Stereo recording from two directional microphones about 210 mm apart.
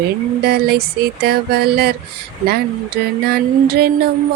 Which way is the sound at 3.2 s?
50° right (ahead or behind).